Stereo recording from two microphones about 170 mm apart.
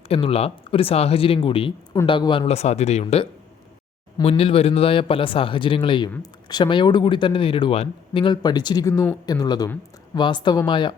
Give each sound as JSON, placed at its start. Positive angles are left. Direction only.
{"t": 0.1, "sound": "a man's voice", "side_deg": 35}
{"t": 2.5, "sound": "a man's voice", "side_deg": 40}